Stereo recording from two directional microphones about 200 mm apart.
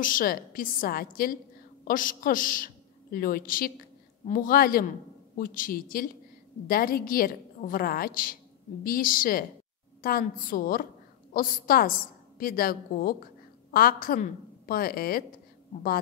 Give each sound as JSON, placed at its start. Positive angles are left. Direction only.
{"t": 0.0, "sound": "a woman's voice", "side_deg": 45}